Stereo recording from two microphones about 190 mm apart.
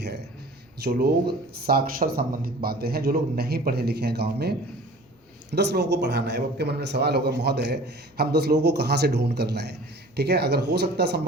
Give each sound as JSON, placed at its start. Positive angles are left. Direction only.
{"t": 0.9, "sound": "a man's voice", "side_deg": -55}